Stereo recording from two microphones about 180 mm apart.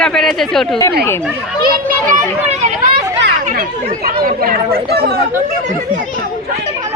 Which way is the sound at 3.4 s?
50° right (ahead or behind).